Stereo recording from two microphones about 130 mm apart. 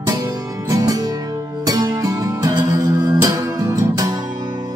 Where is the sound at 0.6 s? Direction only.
30° right (ahead or behind).